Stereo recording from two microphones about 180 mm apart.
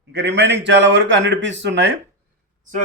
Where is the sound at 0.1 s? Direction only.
70° right (ahead or behind).